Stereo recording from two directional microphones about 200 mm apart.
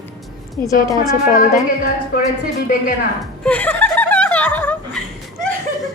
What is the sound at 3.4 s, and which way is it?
Snicker, 5° left (ahead or behind).